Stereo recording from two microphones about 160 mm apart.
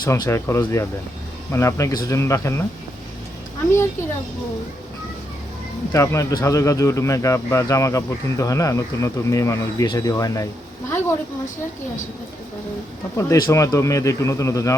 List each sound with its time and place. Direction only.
0.0 s speech: 15° left (ahead or behind)
5.9 s speech: 20° left (ahead or behind)
13.1 s speech: 20° left (ahead or behind)